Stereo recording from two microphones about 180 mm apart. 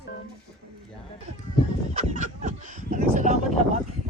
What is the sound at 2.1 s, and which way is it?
Speech, 45° right (ahead or behind).